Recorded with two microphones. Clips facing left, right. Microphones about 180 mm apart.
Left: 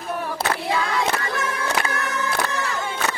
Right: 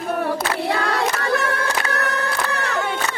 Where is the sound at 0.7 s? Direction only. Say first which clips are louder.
Right 1 dB; 65° right (ahead or behind).